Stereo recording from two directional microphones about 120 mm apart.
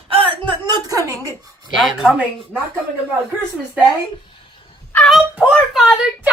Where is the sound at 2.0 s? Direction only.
5° right (ahead or behind).